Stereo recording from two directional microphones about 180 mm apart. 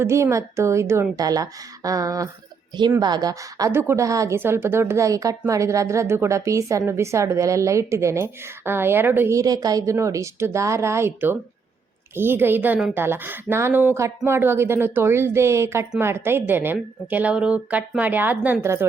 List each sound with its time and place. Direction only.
0.0 s a woman's voice: 15° right (ahead or behind)